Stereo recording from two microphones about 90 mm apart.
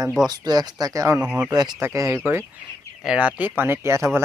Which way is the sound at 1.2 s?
10° right (ahead or behind).